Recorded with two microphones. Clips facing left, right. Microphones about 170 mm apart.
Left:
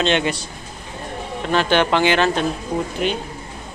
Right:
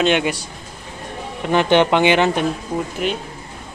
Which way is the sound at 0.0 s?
10° right (ahead or behind).